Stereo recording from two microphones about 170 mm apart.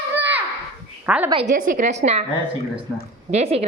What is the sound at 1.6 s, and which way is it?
Speech, 50° right (ahead or behind).